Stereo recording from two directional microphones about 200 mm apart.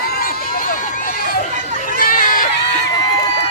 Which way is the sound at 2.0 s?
45° left (ahead or behind).